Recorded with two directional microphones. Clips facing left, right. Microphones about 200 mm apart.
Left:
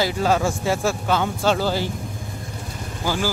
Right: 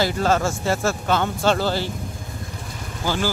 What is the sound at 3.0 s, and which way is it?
Speech, 10° left (ahead or behind).